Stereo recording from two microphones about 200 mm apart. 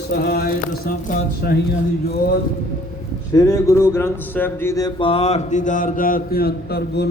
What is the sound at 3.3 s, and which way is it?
A man's voice, 15° left (ahead or behind).